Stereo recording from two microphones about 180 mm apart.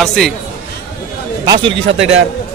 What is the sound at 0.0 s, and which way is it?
Speech, 5° left (ahead or behind).